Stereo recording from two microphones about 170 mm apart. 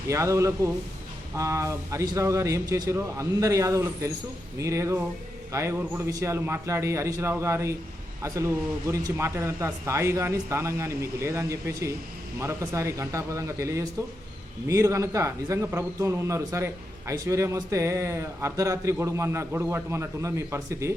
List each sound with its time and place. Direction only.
0.1 s a man's voice: 15° right (ahead or behind)